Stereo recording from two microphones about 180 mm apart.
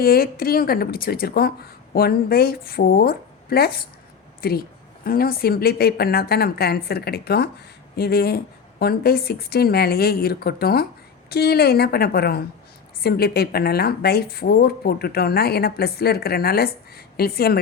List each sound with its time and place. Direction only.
0.0 s speech: 55° left (ahead or behind)